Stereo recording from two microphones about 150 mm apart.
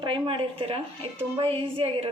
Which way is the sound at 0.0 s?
35° right (ahead or behind).